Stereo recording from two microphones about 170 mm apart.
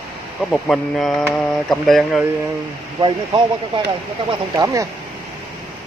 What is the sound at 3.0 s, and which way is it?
Speech, 30° right (ahead or behind).